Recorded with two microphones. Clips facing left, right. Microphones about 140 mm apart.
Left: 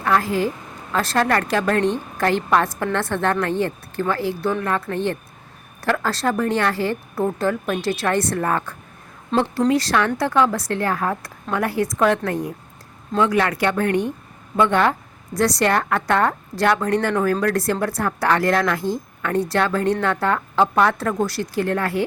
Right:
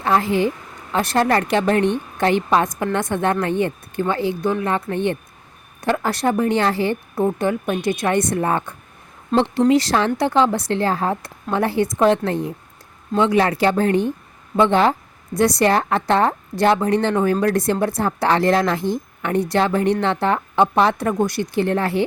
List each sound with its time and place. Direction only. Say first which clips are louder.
0.0 s a woman's voice: right 2 dB; 25° right (ahead or behind)